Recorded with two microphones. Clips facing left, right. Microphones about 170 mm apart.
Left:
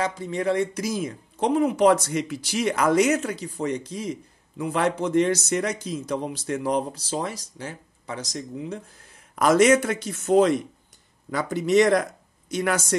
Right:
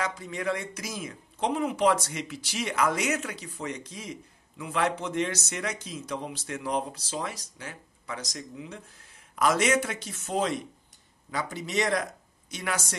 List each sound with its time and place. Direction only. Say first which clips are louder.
0.0 s a man's voice: left 6 dB; 30° left (ahead or behind); by 12.8 s 45° left (ahead or behind)